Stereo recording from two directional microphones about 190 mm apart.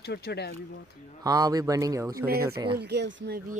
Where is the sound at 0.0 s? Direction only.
60° left (ahead or behind).